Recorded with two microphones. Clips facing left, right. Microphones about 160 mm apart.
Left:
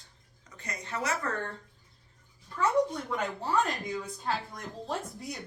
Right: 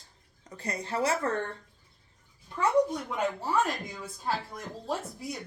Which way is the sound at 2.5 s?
20° right (ahead or behind).